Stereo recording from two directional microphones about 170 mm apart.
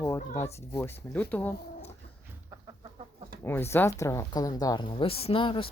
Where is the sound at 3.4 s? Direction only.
15° left (ahead or behind).